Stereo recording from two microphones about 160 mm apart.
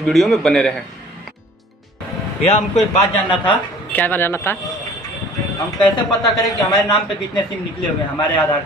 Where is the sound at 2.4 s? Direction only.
40° left (ahead or behind).